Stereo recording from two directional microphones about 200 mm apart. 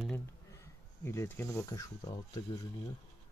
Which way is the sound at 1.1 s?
10° left (ahead or behind).